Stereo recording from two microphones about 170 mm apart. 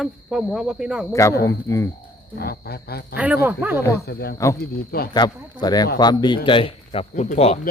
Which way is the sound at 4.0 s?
70° left (ahead or behind).